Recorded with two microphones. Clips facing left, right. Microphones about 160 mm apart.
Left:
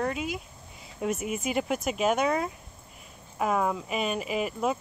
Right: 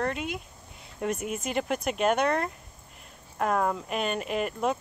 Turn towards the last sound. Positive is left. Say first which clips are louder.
# even
turn(degrees=5)  # may be behind; listen again after turning